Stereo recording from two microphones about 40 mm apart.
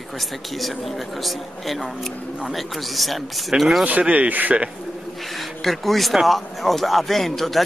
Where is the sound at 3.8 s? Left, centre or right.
Right.